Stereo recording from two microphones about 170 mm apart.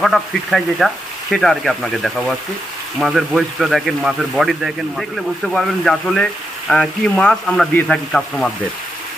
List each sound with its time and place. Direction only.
0.0 s speech: centre (ahead or behind)